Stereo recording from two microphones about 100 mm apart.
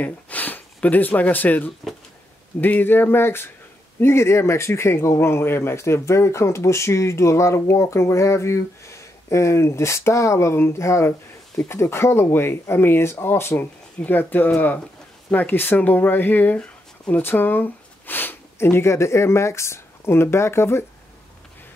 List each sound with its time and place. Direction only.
0.0 s speech: 15° left (ahead or behind)